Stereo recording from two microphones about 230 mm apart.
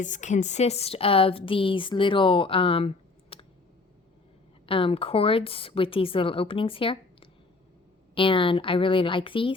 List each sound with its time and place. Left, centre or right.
0.0 s speech: left
4.6 s speech: left